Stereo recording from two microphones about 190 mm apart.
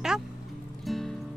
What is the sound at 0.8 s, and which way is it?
Music, centre (ahead or behind).